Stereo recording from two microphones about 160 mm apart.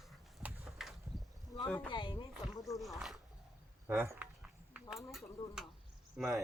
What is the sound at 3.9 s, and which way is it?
Walk, 15° right (ahead or behind).